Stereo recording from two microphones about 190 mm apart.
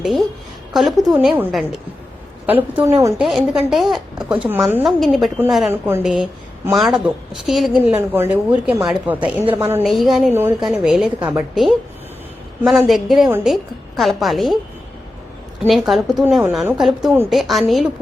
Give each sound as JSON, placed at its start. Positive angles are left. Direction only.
{"t": 0.0, "sound": "a woman's voice", "side_deg": 0}
{"t": 3.2, "sound": "a woman's voice", "side_deg": 0}
{"t": 9.8, "sound": "a woman's voice", "side_deg": 0}
{"t": 15.6, "sound": "a woman's voice", "side_deg": 0}